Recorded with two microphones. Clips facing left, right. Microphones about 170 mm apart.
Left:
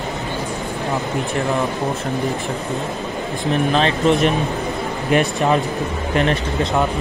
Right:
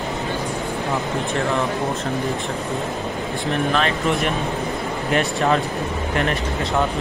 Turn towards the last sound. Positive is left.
turn(degrees=15)  # may be behind; listen again after turning